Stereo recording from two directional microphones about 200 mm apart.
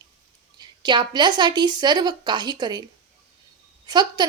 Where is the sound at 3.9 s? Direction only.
20° right (ahead or behind).